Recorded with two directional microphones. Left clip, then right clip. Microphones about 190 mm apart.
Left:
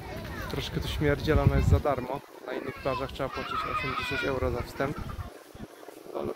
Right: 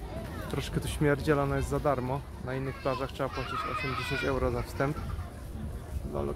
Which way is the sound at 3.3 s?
25° left (ahead or behind).